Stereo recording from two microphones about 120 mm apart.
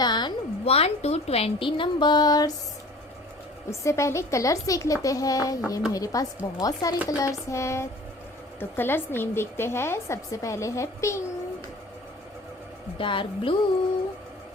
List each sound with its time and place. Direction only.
0.0 s a sound: 35° left (ahead or behind)
0.6 s speech: 55° left (ahead or behind); by 2.5 s 35° left (ahead or behind)
3.7 s a woman's voice: 25° left (ahead or behind)
13.0 s speech: 45° left (ahead or behind)